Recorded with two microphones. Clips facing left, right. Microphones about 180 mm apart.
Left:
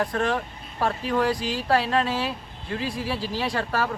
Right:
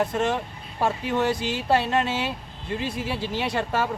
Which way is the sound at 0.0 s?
20° right (ahead or behind).